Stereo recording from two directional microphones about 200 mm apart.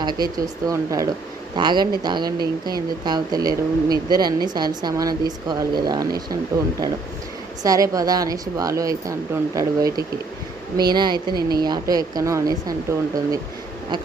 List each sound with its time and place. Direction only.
0.0 s speech: 20° right (ahead or behind)